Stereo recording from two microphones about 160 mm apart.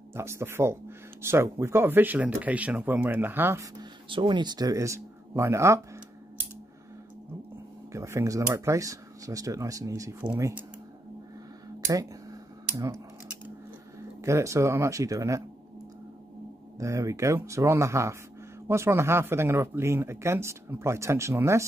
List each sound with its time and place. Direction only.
0.1 s speech: 15° right (ahead or behind)
3.7 s speech: 30° right (ahead or behind)
7.9 s speech: 20° right (ahead or behind)
11.9 s a sound: 20° right (ahead or behind)
13.9 s speech: 20° right (ahead or behind)
16.7 s speech: 20° right (ahead or behind)